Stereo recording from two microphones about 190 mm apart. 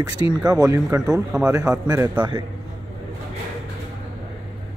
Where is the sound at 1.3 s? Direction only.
5° right (ahead or behind).